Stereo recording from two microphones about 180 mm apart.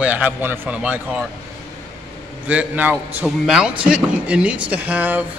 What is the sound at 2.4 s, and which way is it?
A man's voice, 10° right (ahead or behind).